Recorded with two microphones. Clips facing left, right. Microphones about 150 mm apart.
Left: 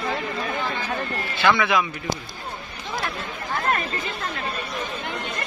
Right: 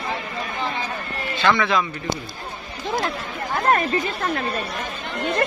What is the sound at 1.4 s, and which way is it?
Speech, 10° left (ahead or behind).